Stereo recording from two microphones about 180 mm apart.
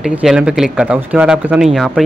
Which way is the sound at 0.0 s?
5° right (ahead or behind).